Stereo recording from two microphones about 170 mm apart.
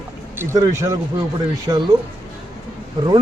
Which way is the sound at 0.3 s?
20° right (ahead or behind).